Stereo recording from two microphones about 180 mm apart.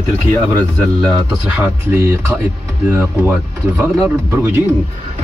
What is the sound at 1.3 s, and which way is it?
Speech, 5° right (ahead or behind).